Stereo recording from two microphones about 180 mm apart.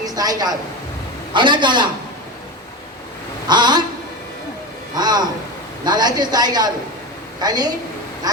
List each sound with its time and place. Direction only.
0.0 s a woman's voice: 20° right (ahead or behind)
3.4 s a sound: 25° right (ahead or behind)
4.9 s a man's voice: 20° right (ahead or behind)